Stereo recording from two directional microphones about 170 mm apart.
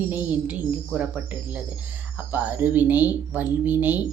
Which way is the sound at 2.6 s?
10° right (ahead or behind).